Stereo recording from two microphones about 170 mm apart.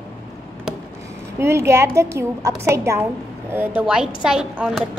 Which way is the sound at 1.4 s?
15° right (ahead or behind).